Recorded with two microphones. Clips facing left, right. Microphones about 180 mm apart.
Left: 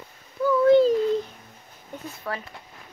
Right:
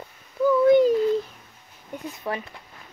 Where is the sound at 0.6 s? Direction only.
15° right (ahead or behind).